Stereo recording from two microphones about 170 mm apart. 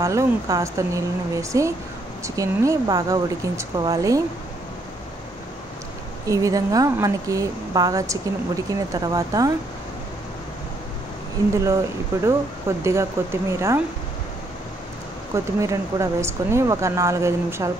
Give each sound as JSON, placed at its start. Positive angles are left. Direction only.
{"t": 0.0, "sound": "speech", "side_deg": -20}
{"t": 6.2, "sound": "speech", "side_deg": -20}
{"t": 12.3, "sound": "speech", "side_deg": -15}
{"t": 15.3, "sound": "speech", "side_deg": -20}